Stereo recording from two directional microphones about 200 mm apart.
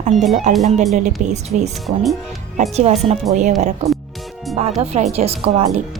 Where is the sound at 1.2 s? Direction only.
35° right (ahead or behind).